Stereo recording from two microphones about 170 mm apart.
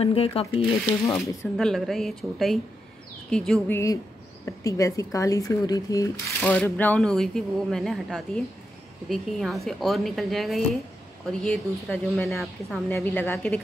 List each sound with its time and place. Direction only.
0.0 s speech: 35° left (ahead or behind)
1.0 s a woman's voice: 15° left (ahead or behind)
1.6 s speech: centre (ahead or behind)
3.7 s speech: 20° left (ahead or behind)
6.4 s a woman's voice: 10° left (ahead or behind)